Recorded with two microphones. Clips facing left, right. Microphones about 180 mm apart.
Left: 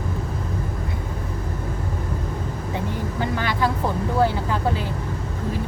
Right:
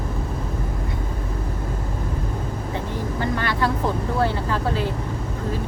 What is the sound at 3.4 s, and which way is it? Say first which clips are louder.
Speech: left 2 dB; 15° left (ahead or behind).